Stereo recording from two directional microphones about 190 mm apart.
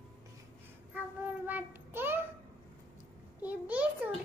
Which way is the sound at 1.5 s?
10° right (ahead or behind).